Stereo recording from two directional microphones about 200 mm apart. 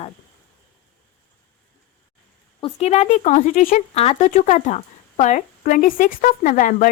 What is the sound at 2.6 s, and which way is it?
Speech, 30° left (ahead or behind).